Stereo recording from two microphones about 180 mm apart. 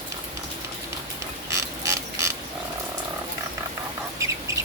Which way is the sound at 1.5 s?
15° right (ahead or behind).